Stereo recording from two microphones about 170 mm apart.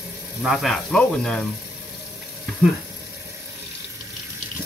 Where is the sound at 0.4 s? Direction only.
Centre (ahead or behind).